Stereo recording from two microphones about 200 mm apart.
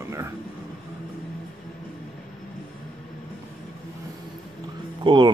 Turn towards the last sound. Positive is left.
turn(degrees=-25)  # may be behind; listen again after turning